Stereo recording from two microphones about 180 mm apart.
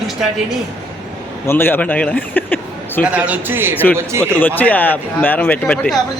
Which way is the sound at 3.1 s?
10° right (ahead or behind).